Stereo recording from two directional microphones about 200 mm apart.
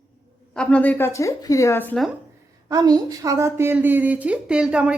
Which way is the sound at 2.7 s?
20° right (ahead or behind).